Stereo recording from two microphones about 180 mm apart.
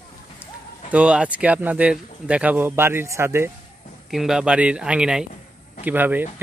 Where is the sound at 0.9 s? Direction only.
5° right (ahead or behind).